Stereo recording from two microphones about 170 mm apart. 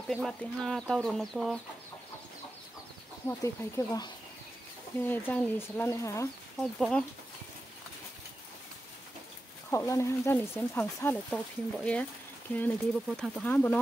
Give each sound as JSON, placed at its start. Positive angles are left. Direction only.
{"t": 0.1, "sound": "speech", "side_deg": 0}
{"t": 3.3, "sound": "speech", "side_deg": 15}
{"t": 6.8, "sound": "speech", "side_deg": 5}
{"t": 9.7, "sound": "speech", "side_deg": 15}